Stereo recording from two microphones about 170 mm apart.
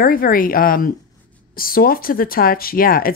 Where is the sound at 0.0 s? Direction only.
60° left (ahead or behind).